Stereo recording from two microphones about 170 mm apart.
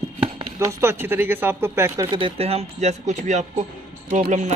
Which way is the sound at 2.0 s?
30° right (ahead or behind).